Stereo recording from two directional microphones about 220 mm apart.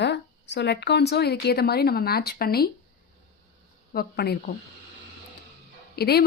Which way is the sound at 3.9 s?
45° left (ahead or behind).